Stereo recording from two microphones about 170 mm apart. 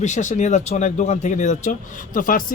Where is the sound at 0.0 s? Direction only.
45° left (ahead or behind).